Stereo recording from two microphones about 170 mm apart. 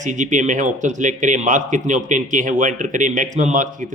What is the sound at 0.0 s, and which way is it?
Speech, 45° right (ahead or behind).